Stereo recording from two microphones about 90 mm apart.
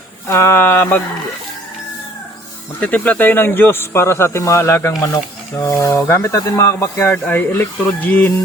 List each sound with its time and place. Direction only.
0.3 s a man's voice: 30° left (ahead or behind)
2.8 s a man's voice: 15° left (ahead or behind)
7.1 s a man's voice: 20° left (ahead or behind)